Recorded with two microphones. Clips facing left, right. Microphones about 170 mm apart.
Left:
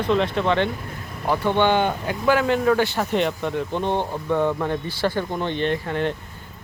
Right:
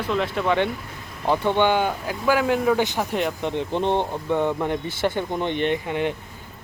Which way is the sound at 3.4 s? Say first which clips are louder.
Right 1 dB; 20° right (ahead or behind).